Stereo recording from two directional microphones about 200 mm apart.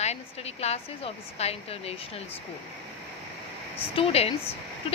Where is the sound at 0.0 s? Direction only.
30° left (ahead or behind).